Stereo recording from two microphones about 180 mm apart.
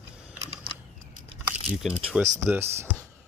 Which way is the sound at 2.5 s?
15° right (ahead or behind).